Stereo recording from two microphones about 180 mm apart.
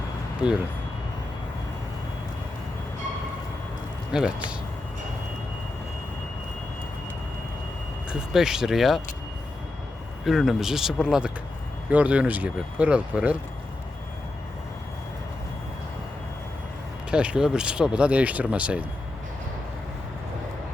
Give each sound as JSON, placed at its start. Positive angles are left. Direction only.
{"t": 0.4, "sound": "speech", "side_deg": -5}
{"t": 4.1, "sound": "speech", "side_deg": -5}
{"t": 8.1, "sound": "speech", "side_deg": -5}
{"t": 10.2, "sound": "speech", "side_deg": 0}
{"t": 17.1, "sound": "speech", "side_deg": -5}